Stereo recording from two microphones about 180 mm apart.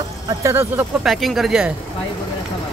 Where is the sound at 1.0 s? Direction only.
Centre (ahead or behind).